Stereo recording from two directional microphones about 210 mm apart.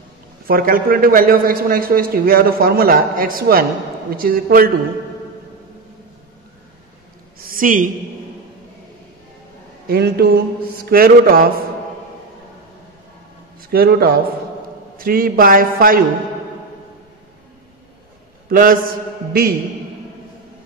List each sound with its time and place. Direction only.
0.5 s a man's voice: 45° right (ahead or behind)
7.3 s a sound: 40° right (ahead or behind)
9.8 s a man's voice: 50° right (ahead or behind)
13.6 s a man's voice: 45° right (ahead or behind)
18.5 s a man's voice: 40° right (ahead or behind)